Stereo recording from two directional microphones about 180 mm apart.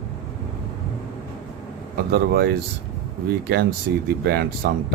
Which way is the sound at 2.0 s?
60° right (ahead or behind).